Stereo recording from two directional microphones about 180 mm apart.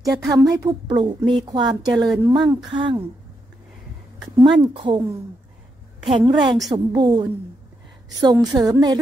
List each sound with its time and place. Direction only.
0.0 s speech: 20° right (ahead or behind)
4.4 s speech: 25° right (ahead or behind)
6.0 s speech: 25° right (ahead or behind)